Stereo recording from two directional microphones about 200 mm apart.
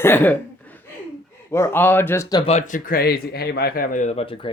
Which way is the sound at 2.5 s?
40° left (ahead or behind).